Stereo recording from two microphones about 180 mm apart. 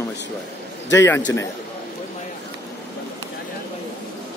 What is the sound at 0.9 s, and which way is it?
Speech, 15° left (ahead or behind).